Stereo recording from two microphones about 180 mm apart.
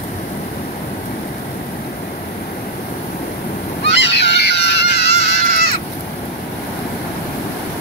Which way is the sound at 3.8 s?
75° left (ahead or behind).